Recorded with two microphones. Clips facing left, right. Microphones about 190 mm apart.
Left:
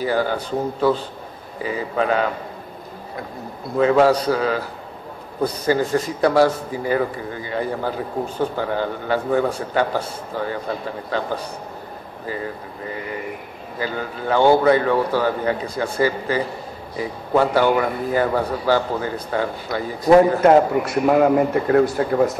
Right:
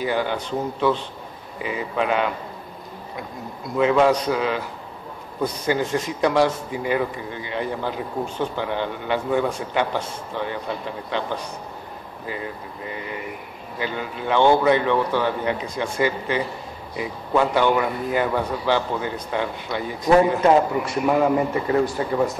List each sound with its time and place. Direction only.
0.0 s a man's voice: 40° left (ahead or behind)
3.7 s a man's voice: 40° left (ahead or behind)
13.7 s a man's voice: 40° left (ahead or behind); by 22.3 s 60° left (ahead or behind)